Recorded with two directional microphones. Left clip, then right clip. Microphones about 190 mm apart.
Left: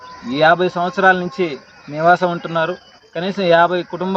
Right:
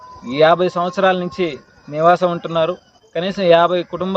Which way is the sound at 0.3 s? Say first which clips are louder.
Even; 25° right (ahead or behind).